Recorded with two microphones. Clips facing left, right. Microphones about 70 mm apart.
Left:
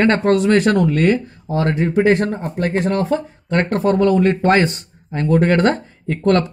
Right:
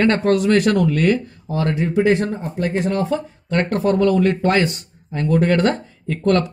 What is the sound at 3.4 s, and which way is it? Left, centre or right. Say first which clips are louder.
Speech: left 1 dB; left.